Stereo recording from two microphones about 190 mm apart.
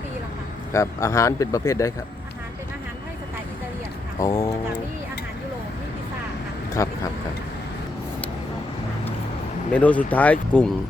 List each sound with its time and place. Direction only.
0.7 s speech: 15° left (ahead or behind)
4.2 s speech: 15° left (ahead or behind)
6.8 s speech: 20° left (ahead or behind)
9.7 s speech: 5° left (ahead or behind)